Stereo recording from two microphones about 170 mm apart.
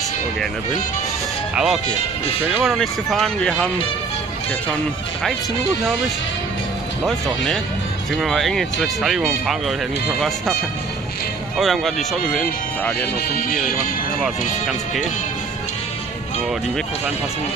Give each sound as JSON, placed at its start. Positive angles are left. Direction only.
{"t": 1.5, "sound": "speech", "side_deg": -5}
{"t": 7.0, "sound": "speech", "side_deg": 0}
{"t": 11.5, "sound": "speech", "side_deg": 0}
{"t": 13.3, "sound": "speech", "side_deg": 60}